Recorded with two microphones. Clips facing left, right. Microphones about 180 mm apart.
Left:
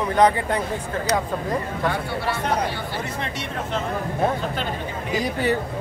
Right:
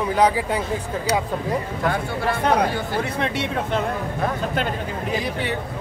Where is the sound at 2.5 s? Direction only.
65° right (ahead or behind).